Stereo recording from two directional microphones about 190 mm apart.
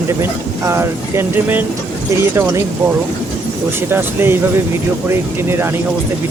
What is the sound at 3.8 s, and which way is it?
Speech, 10° right (ahead or behind).